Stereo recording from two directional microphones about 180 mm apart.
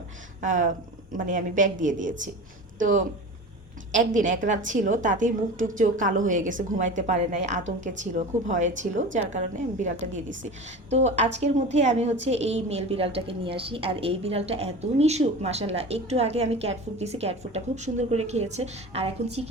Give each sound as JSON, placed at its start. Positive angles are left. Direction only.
{"t": 0.4, "sound": "a woman's voice", "side_deg": -45}
{"t": 10.8, "sound": "a woman's voice", "side_deg": -40}